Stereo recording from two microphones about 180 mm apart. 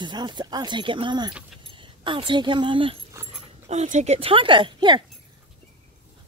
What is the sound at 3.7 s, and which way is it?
A woman's voice, 40° right (ahead or behind).